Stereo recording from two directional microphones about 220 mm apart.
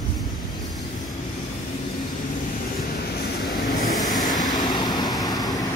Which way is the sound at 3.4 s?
40° left (ahead or behind).